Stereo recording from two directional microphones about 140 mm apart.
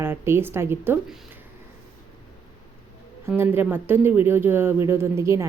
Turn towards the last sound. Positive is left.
turn(degrees=-20)  # may be behind; listen again after turning